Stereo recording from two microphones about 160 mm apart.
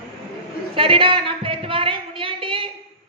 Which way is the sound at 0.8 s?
35° right (ahead or behind).